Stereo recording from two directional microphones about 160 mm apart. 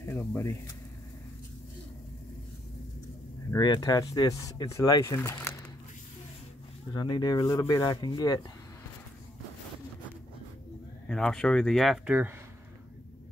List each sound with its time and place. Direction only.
0.0 s speech: 15° left (ahead or behind)
3.4 s speech: 25° left (ahead or behind)
6.9 s speech: 25° left (ahead or behind)
11.1 s speech: 5° left (ahead or behind)
12.1 s speech: 10° right (ahead or behind)